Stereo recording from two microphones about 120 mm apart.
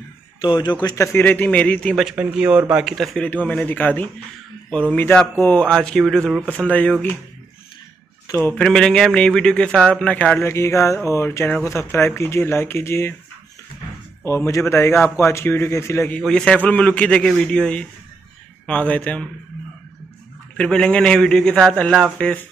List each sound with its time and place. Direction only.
0.4 s a man's voice: 40° left (ahead or behind)
0.9 s a man's voice: 20° left (ahead or behind)
2.0 s speech: 5° right (ahead or behind)
3.3 s a man's voice: 15° left (ahead or behind)
8.3 s a man's voice: 15° left (ahead or behind)
8.6 s a man's voice: 5° left (ahead or behind)
10.5 s speech: 25° left (ahead or behind)
14.2 s speech: 25° left (ahead or behind)
16.2 s a man's voice: 5° left (ahead or behind)
20.5 s a man's voice: 5° left (ahead or behind)